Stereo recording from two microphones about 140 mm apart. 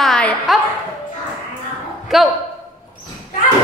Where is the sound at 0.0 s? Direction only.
5° left (ahead or behind).